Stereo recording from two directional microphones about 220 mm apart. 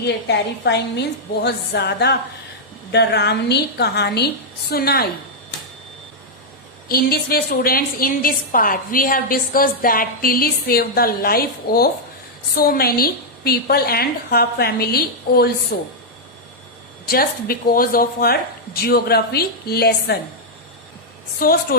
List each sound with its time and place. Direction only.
0.3 s a woman's voice: 50° left (ahead or behind)
6.8 s a woman's voice: 45° left (ahead or behind)
17.1 s a woman's voice: 45° left (ahead or behind)
21.3 s a woman's voice: 40° left (ahead or behind)